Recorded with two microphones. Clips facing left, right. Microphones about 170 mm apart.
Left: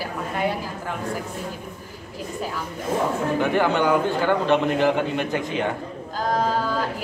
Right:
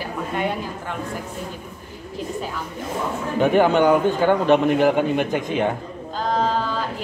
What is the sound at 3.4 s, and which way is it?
A man's voice, 15° right (ahead or behind).